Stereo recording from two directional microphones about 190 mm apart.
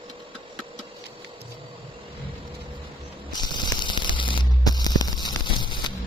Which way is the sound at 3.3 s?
20° left (ahead or behind).